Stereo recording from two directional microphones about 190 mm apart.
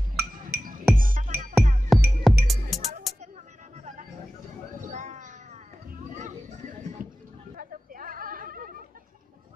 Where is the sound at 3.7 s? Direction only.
40° right (ahead or behind).